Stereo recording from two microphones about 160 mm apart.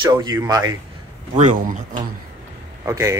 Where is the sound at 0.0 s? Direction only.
25° right (ahead or behind).